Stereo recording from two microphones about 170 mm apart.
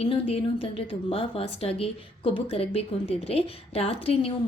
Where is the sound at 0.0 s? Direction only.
35° left (ahead or behind).